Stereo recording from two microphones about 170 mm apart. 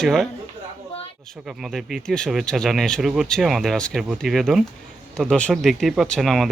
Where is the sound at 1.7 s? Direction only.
Centre (ahead or behind).